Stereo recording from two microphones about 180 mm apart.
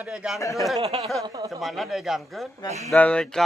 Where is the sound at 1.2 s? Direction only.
20° right (ahead or behind).